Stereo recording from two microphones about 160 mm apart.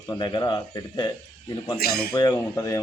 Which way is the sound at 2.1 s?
25° left (ahead or behind).